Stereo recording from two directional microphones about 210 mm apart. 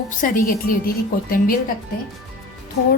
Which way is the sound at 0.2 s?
40° left (ahead or behind).